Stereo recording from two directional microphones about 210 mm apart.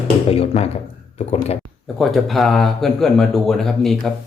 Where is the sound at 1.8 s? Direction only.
Centre (ahead or behind).